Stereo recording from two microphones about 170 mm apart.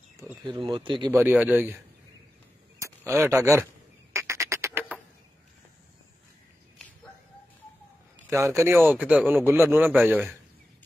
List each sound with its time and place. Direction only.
0.5 s speech: 30° right (ahead or behind)
1.1 s speech: 10° right (ahead or behind)
3.0 s speech: 15° right (ahead or behind)
4.1 s duck: 15° right (ahead or behind)
8.3 s speech: 15° right (ahead or behind)